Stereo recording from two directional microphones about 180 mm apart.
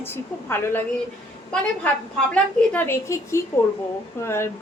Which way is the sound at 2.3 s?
10° left (ahead or behind).